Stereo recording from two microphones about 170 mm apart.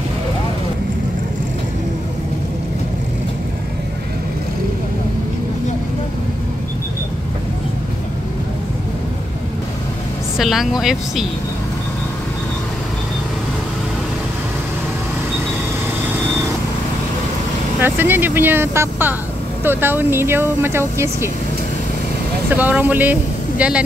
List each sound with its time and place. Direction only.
10.3 s speech: centre (ahead or behind)
17.7 s speech: 10° right (ahead or behind)
22.6 s speech: 10° right (ahead or behind)